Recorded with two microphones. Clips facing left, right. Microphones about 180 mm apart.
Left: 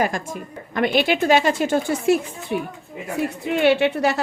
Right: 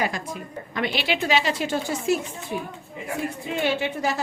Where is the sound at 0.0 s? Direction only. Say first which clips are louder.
Left 4 dB; 45° left (ahead or behind).